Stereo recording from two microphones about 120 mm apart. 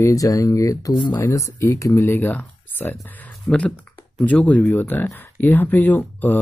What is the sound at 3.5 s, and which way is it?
Speech, 5° left (ahead or behind).